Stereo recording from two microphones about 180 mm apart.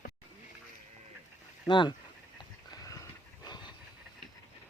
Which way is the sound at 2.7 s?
20° left (ahead or behind).